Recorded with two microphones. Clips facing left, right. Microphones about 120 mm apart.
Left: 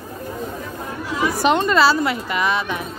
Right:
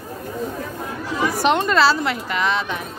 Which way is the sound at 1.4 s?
Centre (ahead or behind).